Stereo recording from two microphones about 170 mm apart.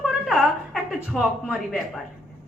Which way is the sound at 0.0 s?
Centre (ahead or behind).